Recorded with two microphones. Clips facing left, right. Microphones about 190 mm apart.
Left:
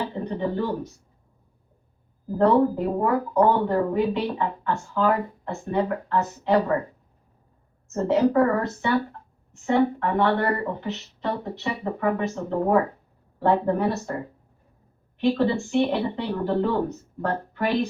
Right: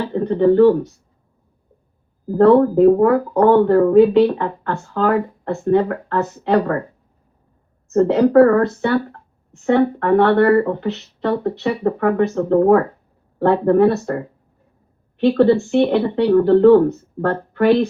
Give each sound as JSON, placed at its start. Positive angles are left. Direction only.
{"t": 0.1, "sound": "a sound", "side_deg": -65}
{"t": 2.4, "sound": "speech", "side_deg": -70}
{"t": 7.9, "sound": "speech", "side_deg": -65}
{"t": 15.2, "sound": "speech", "side_deg": -65}